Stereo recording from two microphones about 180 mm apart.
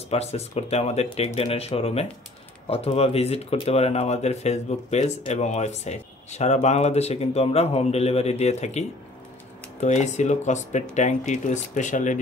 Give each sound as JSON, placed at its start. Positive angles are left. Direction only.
{"t": 0.1, "sound": "speech", "side_deg": 35}